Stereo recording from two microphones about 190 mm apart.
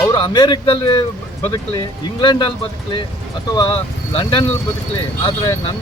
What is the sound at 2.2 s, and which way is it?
Speech, 25° left (ahead or behind).